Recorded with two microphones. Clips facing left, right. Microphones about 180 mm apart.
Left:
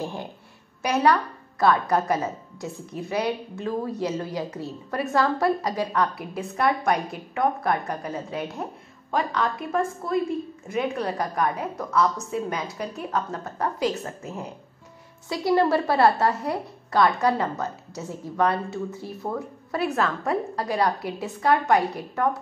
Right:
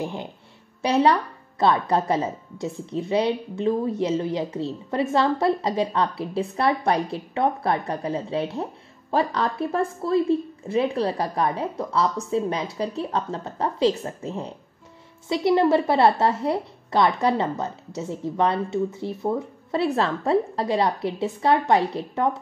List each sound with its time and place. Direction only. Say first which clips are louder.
0.0 s a woman's voice: right 2 dB; 20° right (ahead or behind)